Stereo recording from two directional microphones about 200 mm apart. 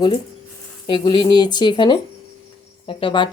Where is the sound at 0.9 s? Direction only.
25° left (ahead or behind).